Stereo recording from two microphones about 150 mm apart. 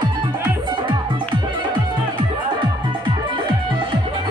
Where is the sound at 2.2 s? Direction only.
35° right (ahead or behind).